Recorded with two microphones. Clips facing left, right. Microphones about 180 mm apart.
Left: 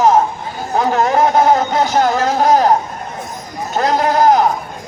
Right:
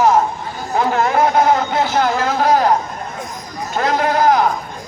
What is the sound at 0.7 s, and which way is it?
Vehicle, 40° left (ahead or behind).